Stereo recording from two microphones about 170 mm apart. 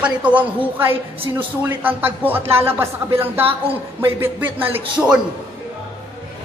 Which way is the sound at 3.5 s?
35° right (ahead or behind).